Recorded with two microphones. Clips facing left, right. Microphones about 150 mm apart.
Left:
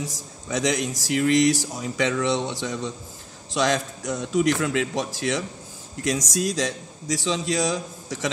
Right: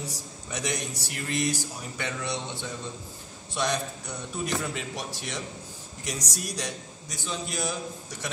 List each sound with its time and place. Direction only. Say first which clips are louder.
0.0 s a man's voice: left 4 dB; 90° left